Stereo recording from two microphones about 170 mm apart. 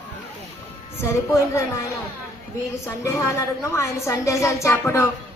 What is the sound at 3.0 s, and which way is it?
A woman's voice, 20° left (ahead or behind).